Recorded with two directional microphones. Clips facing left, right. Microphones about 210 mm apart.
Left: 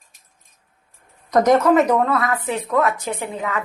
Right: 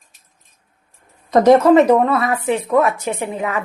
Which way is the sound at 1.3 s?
25° right (ahead or behind).